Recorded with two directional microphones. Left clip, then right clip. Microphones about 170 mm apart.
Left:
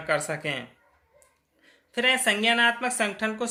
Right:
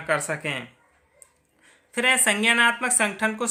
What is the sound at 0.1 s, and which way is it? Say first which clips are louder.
Speech: right 2 dB; 20° right (ahead or behind).